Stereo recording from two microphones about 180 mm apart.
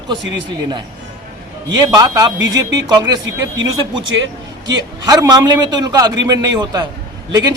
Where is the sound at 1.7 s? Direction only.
20° right (ahead or behind).